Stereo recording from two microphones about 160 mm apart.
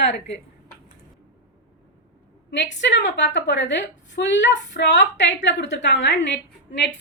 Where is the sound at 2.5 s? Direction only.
90° left.